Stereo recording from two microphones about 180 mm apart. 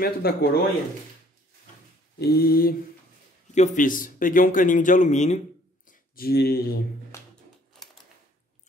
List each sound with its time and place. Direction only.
0.0 s mantra: 60° left (ahead or behind)
2.1 s mantra: 60° left (ahead or behind)
3.5 s speech: 45° left (ahead or behind)
5.9 s speech: 55° left (ahead or behind)